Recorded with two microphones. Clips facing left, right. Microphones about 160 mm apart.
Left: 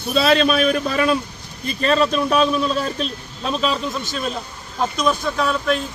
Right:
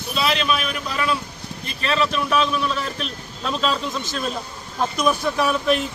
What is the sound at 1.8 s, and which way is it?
Speech, 40° left (ahead or behind).